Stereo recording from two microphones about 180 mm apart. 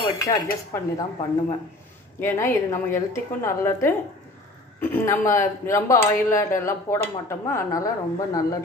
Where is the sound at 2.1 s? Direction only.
15° left (ahead or behind).